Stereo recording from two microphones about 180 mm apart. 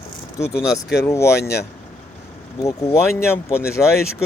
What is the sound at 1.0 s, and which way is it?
Speech, 15° left (ahead or behind).